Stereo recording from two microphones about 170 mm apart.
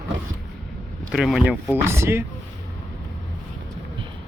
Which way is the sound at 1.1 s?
Centre (ahead or behind).